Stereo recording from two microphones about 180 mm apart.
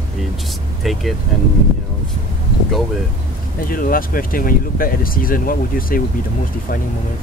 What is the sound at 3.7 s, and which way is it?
Speech, 50° left (ahead or behind).